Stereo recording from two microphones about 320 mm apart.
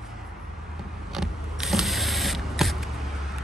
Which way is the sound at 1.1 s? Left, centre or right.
Centre.